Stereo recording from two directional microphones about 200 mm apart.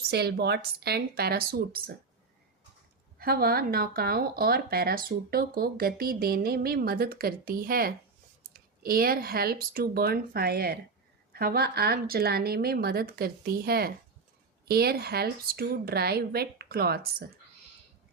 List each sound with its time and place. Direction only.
0.1 s speech: 55° right (ahead or behind)
3.2 s speech: 50° right (ahead or behind)